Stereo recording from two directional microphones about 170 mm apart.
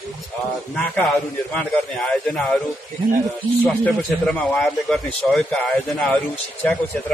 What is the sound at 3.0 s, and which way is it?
Speech, 30° right (ahead or behind).